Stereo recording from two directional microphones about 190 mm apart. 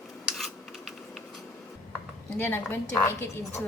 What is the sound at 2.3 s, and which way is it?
Speech, 10° left (ahead or behind).